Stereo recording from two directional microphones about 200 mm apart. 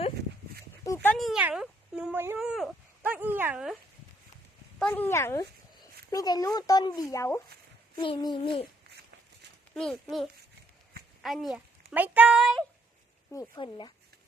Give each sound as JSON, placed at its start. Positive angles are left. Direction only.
{"t": 0.9, "sound": "a sound", "side_deg": 5}
{"t": 4.8, "sound": "a child's voice", "side_deg": 5}
{"t": 9.7, "sound": "a child's voice", "side_deg": 5}
{"t": 13.6, "sound": "a child's voice", "side_deg": 25}